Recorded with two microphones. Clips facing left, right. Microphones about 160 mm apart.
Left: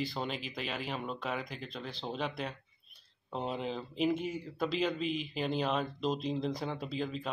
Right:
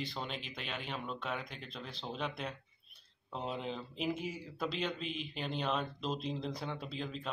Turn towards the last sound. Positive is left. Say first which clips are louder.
# left 4 dB
turn(degrees=0)  # may be behind; listen again after turning